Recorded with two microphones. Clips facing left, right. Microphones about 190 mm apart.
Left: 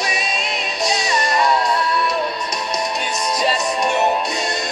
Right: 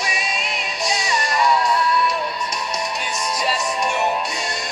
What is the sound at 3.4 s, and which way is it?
Music, 20° left (ahead or behind).